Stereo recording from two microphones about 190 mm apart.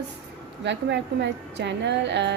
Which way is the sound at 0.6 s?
65° right (ahead or behind).